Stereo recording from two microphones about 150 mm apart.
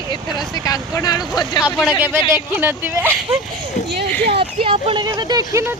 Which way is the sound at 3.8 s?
50° left (ahead or behind).